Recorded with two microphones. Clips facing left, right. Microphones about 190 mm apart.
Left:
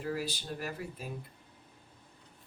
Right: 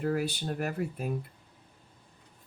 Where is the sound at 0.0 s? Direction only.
55° right (ahead or behind).